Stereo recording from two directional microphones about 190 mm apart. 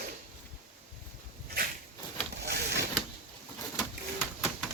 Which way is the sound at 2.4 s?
60° right (ahead or behind).